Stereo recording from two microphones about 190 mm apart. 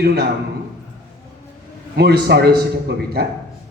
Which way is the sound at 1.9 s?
55° right (ahead or behind).